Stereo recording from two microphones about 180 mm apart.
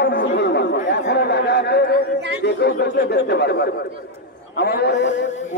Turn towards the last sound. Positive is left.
turn(degrees=85)